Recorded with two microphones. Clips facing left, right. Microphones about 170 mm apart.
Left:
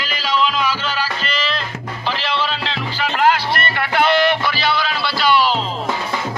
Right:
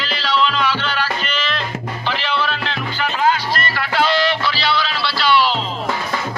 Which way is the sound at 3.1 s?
60° left (ahead or behind).